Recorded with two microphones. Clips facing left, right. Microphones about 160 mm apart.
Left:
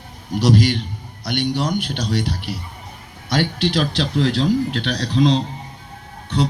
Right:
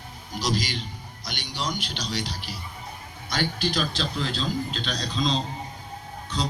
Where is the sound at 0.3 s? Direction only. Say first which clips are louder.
Left 11 dB; 65° left (ahead or behind).